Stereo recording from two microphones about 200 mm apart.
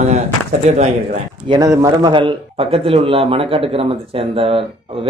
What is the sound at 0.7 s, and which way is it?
Speech, 35° right (ahead or behind).